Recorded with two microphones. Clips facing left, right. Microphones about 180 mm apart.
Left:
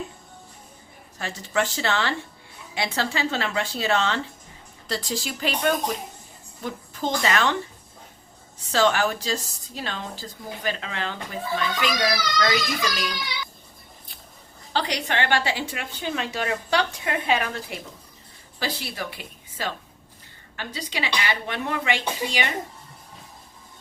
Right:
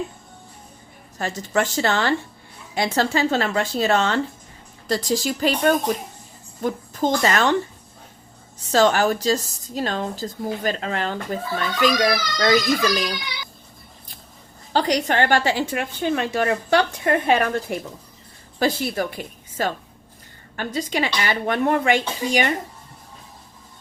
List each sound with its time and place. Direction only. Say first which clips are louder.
1.2 s a woman's voice: right 3 dB; 45° right (ahead or behind)
8.7 s a woman's voice: right 4 dB; 40° right (ahead or behind)
11.9 s a child's voice: right 3 dB; 25° right (ahead or behind)
14.7 s a woman's voice: right 6 dB; 45° right (ahead or behind)